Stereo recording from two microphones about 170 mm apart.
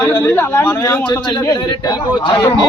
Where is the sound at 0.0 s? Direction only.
15° left (ahead or behind).